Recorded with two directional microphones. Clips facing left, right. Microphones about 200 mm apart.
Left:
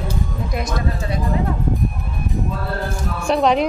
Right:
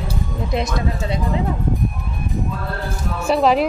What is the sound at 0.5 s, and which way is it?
Speech, 25° right (ahead or behind).